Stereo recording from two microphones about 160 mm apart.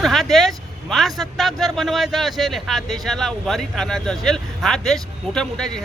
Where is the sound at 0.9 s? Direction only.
Centre (ahead or behind).